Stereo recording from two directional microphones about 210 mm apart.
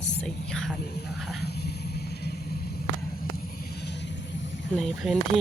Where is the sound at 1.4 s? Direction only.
50° left (ahead or behind).